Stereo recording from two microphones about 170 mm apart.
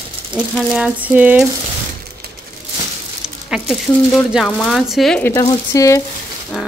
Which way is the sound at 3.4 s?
Centre (ahead or behind).